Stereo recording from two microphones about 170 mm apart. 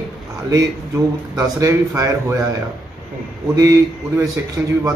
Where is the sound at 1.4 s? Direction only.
20° right (ahead or behind).